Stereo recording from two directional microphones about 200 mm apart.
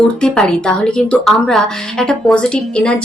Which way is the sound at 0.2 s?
5° left (ahead or behind).